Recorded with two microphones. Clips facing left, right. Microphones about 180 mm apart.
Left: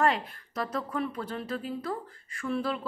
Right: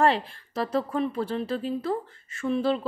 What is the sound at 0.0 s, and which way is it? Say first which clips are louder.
A woman's voice: right 4 dB; 30° right (ahead or behind).